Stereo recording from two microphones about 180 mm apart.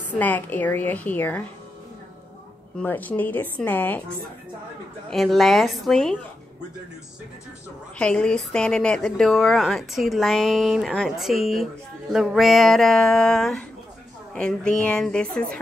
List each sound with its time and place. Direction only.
0.2 s a woman's voice: 10° left (ahead or behind)
2.8 s a woman's voice: 10° left (ahead or behind)
5.1 s a woman's voice: centre (ahead or behind)
8.0 s a woman's voice: 5° left (ahead or behind)